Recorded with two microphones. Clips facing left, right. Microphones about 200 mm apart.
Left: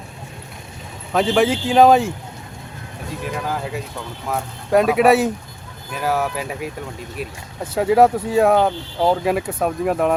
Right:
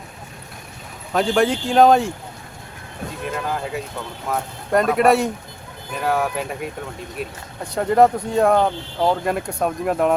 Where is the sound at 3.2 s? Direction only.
Centre (ahead or behind).